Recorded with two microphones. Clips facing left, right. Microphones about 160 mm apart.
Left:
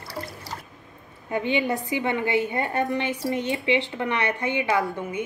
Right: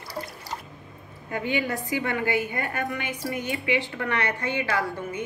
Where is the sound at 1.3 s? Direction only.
25° left (ahead or behind).